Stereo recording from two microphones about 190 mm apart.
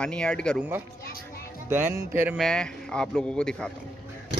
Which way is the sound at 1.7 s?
15° right (ahead or behind).